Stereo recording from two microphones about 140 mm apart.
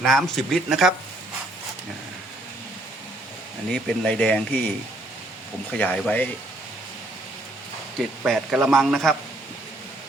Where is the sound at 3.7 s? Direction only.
10° left (ahead or behind).